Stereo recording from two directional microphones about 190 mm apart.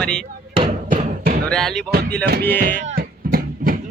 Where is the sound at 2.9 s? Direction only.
50° right (ahead or behind).